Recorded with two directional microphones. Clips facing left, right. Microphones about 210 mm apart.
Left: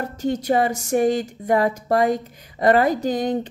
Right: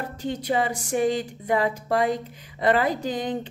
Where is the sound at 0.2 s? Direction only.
40° left (ahead or behind).